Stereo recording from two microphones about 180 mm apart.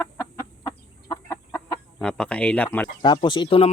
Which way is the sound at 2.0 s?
5° left (ahead or behind).